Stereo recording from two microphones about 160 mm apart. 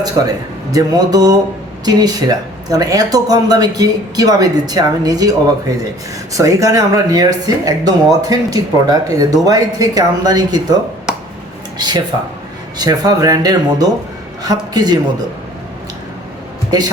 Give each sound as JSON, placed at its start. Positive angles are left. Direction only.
{"t": 0.2, "sound": "speech", "side_deg": -30}
{"t": 11.1, "sound": "finger snapping", "side_deg": -5}
{"t": 11.8, "sound": "speech", "side_deg": -25}